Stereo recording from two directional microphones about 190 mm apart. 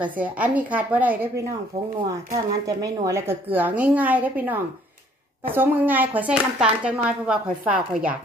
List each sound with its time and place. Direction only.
0.0 s speech: 5° right (ahead or behind)